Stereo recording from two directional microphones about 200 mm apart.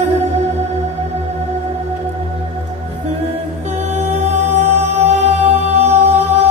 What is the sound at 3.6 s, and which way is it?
Music, 35° right (ahead or behind).